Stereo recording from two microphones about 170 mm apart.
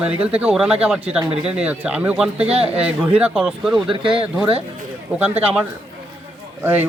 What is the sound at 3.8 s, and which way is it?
Speech, 30° right (ahead or behind).